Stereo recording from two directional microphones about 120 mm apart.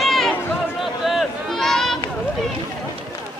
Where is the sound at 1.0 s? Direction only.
Centre (ahead or behind).